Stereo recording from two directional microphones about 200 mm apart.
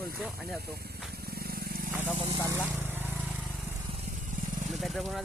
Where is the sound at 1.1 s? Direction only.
50° right (ahead or behind).